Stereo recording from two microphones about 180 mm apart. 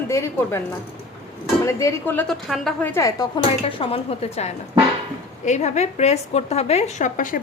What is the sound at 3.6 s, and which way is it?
A woman's voice, 30° left (ahead or behind).